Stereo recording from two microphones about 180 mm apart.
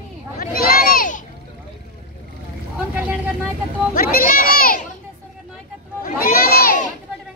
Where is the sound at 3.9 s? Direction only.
50° left (ahead or behind).